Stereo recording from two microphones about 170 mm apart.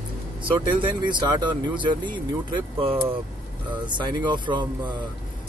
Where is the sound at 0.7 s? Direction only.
25° right (ahead or behind).